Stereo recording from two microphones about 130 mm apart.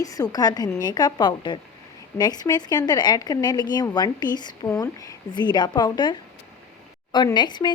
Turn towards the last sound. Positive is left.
turn(degrees=35)  # may be behind; listen again after turning